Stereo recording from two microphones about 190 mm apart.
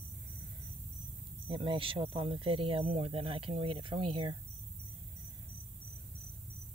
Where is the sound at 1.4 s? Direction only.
25° right (ahead or behind).